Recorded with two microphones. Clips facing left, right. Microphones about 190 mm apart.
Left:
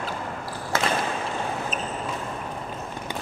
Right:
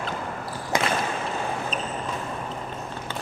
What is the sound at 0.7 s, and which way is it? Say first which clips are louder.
Basketball bounce: right 1 dB; 15° right (ahead or behind).